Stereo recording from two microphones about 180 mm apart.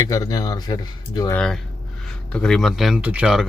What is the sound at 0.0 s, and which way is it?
Speech, 20° left (ahead or behind).